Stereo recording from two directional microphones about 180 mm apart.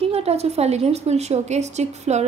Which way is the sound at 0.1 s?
35° right (ahead or behind).